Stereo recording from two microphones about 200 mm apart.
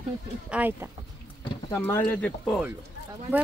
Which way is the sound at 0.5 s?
10° right (ahead or behind).